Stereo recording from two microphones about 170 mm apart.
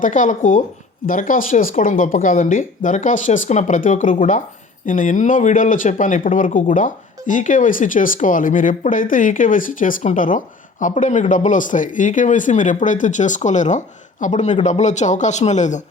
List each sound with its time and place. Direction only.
0.0 s speech: 50° left (ahead or behind)